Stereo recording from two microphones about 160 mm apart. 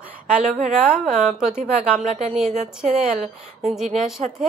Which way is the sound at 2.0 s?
45° right (ahead or behind).